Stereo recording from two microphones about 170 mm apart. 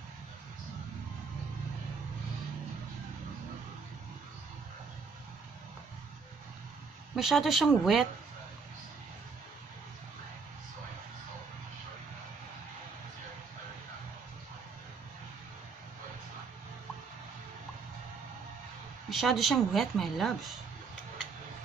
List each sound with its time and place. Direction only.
7.2 s speech: centre (ahead or behind)
19.0 s speech: centre (ahead or behind)